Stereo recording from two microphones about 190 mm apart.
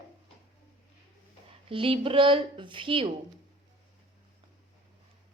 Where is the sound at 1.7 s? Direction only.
30° right (ahead or behind).